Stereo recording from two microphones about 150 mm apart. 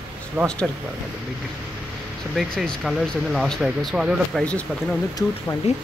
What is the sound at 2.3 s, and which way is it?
Speech, centre (ahead or behind).